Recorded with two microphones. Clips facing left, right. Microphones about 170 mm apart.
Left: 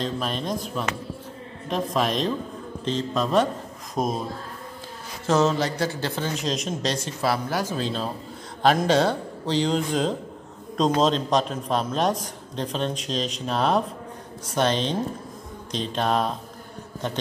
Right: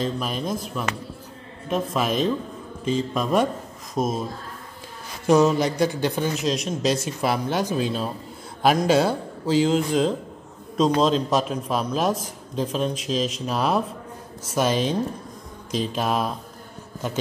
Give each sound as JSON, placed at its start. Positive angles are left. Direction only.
{"t": 0.0, "sound": "a man's voice", "side_deg": -5}
{"t": 5.2, "sound": "speech", "side_deg": -10}
{"t": 6.3, "sound": "a man's voice", "side_deg": 0}
{"t": 7.1, "sound": "speech", "side_deg": -20}
{"t": 7.7, "sound": "a man's voice", "side_deg": -10}